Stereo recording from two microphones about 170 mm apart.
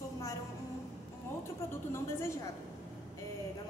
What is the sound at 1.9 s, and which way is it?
Speech, 15° left (ahead or behind).